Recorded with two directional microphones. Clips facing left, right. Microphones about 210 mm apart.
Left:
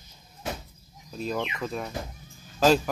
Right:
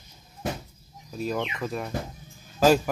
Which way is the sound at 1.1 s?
5° right (ahead or behind).